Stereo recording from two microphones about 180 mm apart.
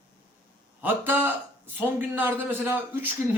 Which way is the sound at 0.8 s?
10° right (ahead or behind).